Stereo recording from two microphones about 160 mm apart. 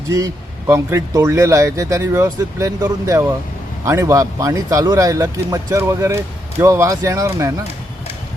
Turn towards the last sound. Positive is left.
turn(degrees=-20)  # may be behind; listen again after turning